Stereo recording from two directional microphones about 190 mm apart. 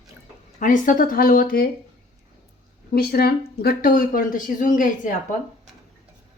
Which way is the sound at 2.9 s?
55° left (ahead or behind).